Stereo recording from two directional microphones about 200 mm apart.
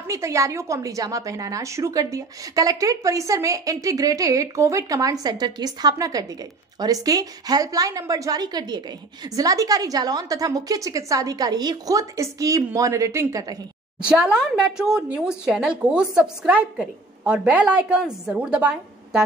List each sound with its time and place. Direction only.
0.1 s a woman's voice: 15° right (ahead or behind)
14.0 s a woman's voice: 5° right (ahead or behind)